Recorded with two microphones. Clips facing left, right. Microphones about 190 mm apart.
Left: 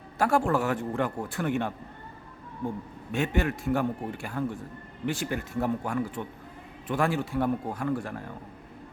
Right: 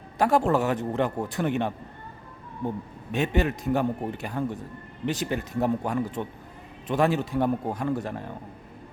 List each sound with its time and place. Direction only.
0.2 s a man's voice: 20° right (ahead or behind)
3.1 s a man's voice: 20° right (ahead or behind)